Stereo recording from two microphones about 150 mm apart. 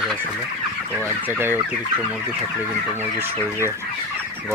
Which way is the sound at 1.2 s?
15° right (ahead or behind).